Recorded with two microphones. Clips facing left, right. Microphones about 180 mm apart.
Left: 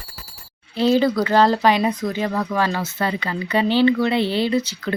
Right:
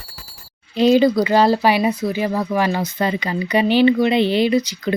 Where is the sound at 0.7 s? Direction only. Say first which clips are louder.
Right 4 dB; 15° right (ahead or behind).